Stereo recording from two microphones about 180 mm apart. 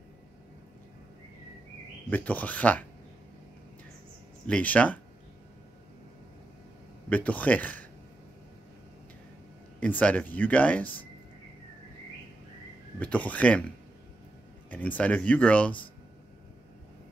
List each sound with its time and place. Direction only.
2.0 s speech: 10° left (ahead or behind)
4.5 s speech: 10° left (ahead or behind)
7.1 s speech: 10° left (ahead or behind)
9.8 s speech: 10° left (ahead or behind)
13.0 s speech: 10° left (ahead or behind)
14.7 s speech: 10° left (ahead or behind)